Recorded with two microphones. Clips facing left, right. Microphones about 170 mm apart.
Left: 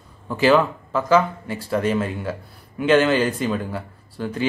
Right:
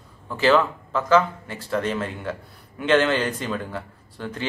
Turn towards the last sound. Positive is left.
turn(degrees=10)  # may be behind; listen again after turning